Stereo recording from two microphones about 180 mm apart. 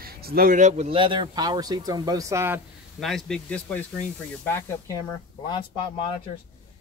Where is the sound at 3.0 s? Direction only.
Centre (ahead or behind).